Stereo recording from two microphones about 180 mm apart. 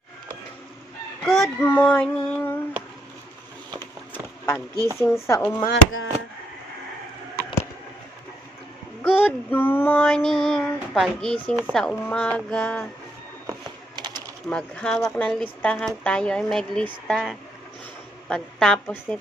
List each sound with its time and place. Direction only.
1.2 s fowl: centre (ahead or behind)
1.5 s speech: 10° left (ahead or behind)
3.8 s a sound: 15° left (ahead or behind)
4.7 s speech: 20° right (ahead or behind)
4.9 s speech: 15° left (ahead or behind)
5.7 s chop: 90° left
9.0 s child singing: 10° left (ahead or behind)
11.7 s speech: 5° left (ahead or behind)
13.5 s a sound: 25° right (ahead or behind)
14.4 s speech: 5° left (ahead or behind)